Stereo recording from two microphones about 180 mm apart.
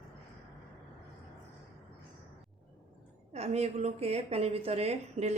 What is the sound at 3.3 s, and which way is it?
A woman's voice, 35° right (ahead or behind).